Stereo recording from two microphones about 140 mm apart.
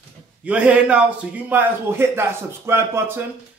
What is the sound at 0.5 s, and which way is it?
A man's voice, 10° right (ahead or behind).